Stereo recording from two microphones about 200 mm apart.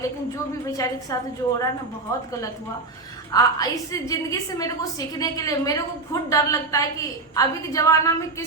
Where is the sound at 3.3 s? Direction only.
20° left (ahead or behind).